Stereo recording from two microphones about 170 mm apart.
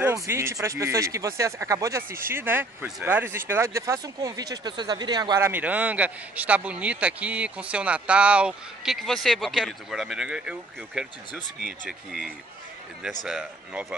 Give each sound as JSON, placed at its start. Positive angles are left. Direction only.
{"t": 0.0, "sound": "a man's voice", "side_deg": -15}
{"t": 5.5, "sound": "a man's voice", "side_deg": -10}